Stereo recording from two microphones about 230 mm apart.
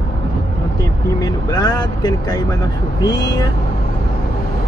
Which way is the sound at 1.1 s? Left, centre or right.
Centre.